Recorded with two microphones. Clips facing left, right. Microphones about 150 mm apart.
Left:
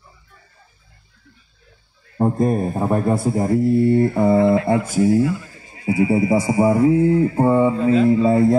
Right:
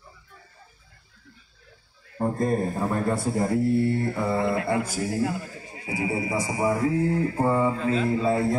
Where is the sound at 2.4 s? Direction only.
20° left (ahead or behind).